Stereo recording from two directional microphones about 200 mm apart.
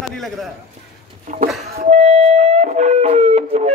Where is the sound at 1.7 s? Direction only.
35° right (ahead or behind).